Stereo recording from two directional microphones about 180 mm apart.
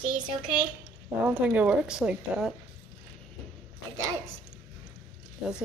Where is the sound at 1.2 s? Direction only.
10° right (ahead or behind).